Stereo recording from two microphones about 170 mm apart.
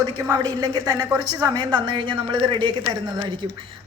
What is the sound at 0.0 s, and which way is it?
A woman's voice, 20° right (ahead or behind).